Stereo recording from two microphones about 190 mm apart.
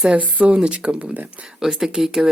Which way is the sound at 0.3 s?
5° right (ahead or behind).